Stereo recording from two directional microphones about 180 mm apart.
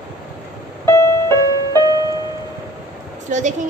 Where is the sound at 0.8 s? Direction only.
15° left (ahead or behind).